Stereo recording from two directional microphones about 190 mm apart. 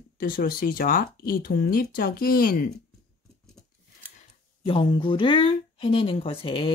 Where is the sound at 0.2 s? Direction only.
50° left (ahead or behind).